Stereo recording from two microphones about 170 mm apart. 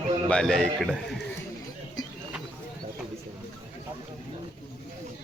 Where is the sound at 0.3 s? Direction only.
5° left (ahead or behind).